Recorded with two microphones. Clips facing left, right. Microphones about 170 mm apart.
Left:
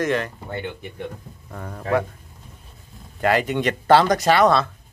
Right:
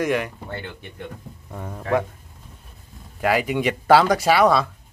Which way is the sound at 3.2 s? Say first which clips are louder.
Left 1 dB; 5° right (ahead or behind).